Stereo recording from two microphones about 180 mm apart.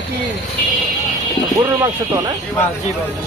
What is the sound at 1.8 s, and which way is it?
Speech, 20° right (ahead or behind).